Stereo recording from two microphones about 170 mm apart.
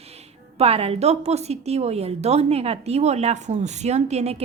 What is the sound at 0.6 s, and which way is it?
A woman's voice, 35° right (ahead or behind).